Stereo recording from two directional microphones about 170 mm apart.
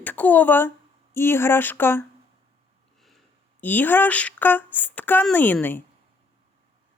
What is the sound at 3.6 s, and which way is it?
A woman's voice, 10° left (ahead or behind).